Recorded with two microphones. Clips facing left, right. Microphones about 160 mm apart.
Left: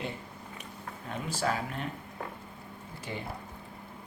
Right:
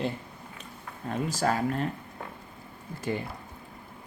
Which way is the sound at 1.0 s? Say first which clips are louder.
Right 5 dB; 40° right (ahead or behind).